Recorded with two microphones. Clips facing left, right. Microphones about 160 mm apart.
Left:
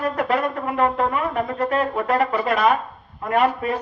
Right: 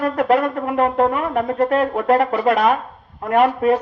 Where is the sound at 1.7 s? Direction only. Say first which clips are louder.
Right 5 dB; 80° right.